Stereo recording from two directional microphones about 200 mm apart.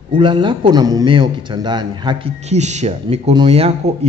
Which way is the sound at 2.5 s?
35° right (ahead or behind).